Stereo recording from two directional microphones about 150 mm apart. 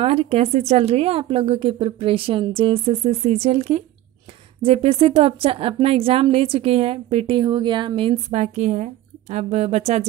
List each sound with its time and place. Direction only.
0.0 s speech: 35° right (ahead or behind)
8.3 s a woman's voice: 50° right (ahead or behind)